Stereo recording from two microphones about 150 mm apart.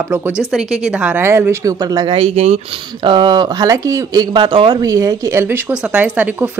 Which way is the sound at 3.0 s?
30° right (ahead or behind).